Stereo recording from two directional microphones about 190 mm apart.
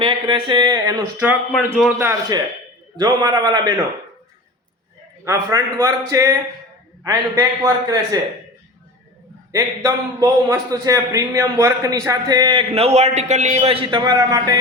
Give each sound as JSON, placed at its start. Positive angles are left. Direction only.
{"t": 0.0, "sound": "a sound", "side_deg": -25}
{"t": 2.0, "sound": "a man's voice", "side_deg": -10}
{"t": 5.2, "sound": "a man's voice", "side_deg": -15}
{"t": 9.5, "sound": "a man's voice", "side_deg": -20}